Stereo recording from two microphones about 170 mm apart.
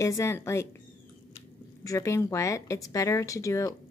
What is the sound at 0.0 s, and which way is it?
Speech, 20° left (ahead or behind).